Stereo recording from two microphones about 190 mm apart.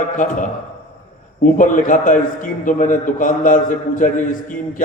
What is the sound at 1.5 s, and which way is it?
A man's voice, 45° left (ahead or behind).